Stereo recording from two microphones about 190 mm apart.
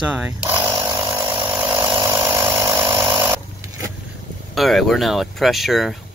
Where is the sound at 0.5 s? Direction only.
10° right (ahead or behind).